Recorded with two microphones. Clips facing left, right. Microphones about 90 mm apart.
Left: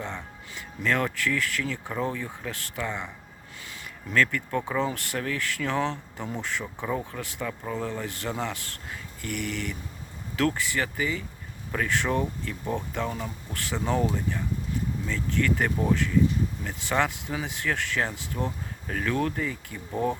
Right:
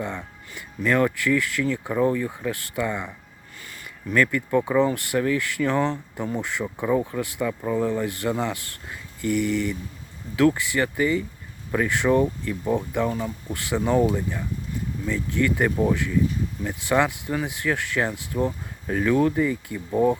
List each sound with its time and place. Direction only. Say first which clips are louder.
0.0 s speech: right 4 dB; 15° right (ahead or behind)
4.1 s speech: right 4 dB; 10° right (ahead or behind)
10.3 s speech: right 6 dB; 10° right (ahead or behind)